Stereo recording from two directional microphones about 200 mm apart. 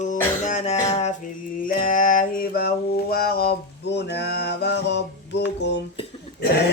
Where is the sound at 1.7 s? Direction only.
45° left (ahead or behind).